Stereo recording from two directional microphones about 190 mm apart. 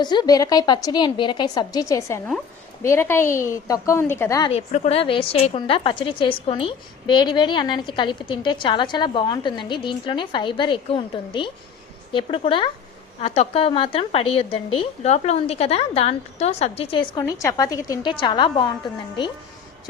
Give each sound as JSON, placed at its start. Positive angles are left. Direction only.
{"t": 0.0, "sound": "a woman's voice", "side_deg": 20}
{"t": 4.5, "sound": "a woman's voice", "side_deg": 35}